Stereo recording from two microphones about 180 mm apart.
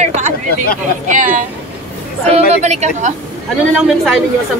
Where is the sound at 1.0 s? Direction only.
45° right (ahead or behind).